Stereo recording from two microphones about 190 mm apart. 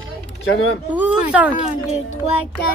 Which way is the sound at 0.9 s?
5° right (ahead or behind).